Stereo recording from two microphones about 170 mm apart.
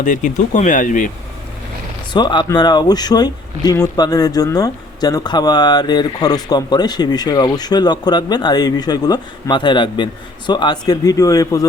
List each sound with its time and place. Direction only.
0.0 s speech: 50° left (ahead or behind)
2.1 s speech: 25° left (ahead or behind)